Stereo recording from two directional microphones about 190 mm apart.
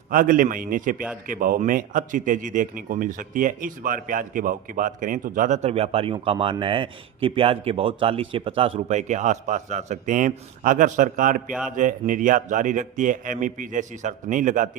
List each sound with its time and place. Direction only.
0.1 s speech: 45° right (ahead or behind)